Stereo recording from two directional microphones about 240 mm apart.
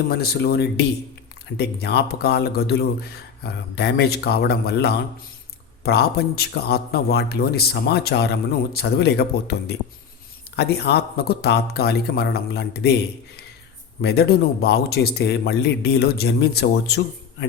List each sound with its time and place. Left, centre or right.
0.1 s a man's voice: left
14.0 s speech: left